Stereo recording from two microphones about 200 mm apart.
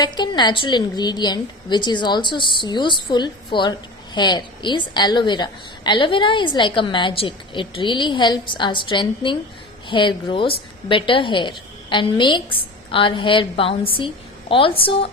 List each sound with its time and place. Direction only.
0.0 s a woman's voice: 20° left (ahead or behind)